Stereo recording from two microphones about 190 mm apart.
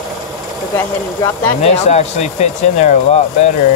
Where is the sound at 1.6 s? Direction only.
35° left (ahead or behind).